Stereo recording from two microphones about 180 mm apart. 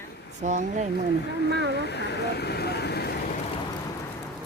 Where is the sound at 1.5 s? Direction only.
75° right (ahead or behind).